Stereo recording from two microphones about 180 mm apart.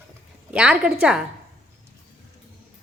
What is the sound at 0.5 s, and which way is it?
Speech, 5° right (ahead or behind).